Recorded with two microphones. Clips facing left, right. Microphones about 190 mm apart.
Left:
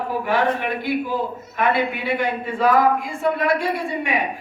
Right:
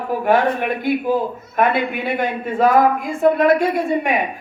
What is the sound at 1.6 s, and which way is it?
A woman's voice, 50° right (ahead or behind).